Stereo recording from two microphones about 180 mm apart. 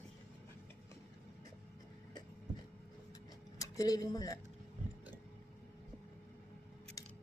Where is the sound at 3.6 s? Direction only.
20° left (ahead or behind).